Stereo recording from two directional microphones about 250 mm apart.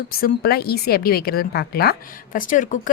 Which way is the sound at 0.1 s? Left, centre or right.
Left.